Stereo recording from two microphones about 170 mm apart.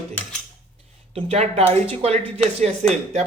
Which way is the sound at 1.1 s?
35° right (ahead or behind).